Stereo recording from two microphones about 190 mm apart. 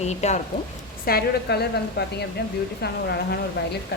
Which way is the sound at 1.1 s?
55° left (ahead or behind).